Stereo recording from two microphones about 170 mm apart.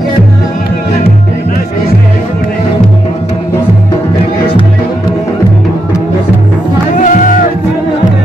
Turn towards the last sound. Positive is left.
turn(degrees=50)  # may be behind; listen again after turning